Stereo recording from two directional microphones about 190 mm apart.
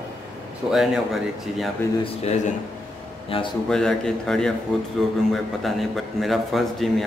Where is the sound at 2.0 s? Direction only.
35° left (ahead or behind).